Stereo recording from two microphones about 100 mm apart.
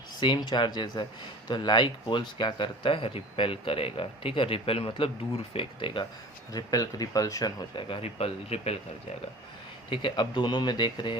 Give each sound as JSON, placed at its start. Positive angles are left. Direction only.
{"t": 0.2, "sound": "speech", "side_deg": 50}
{"t": 6.5, "sound": "speech", "side_deg": 40}
{"t": 7.8, "sound": "speech", "side_deg": 60}
{"t": 9.9, "sound": "speech", "side_deg": 55}